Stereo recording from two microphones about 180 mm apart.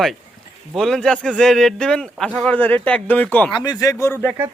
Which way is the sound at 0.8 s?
5° left (ahead or behind).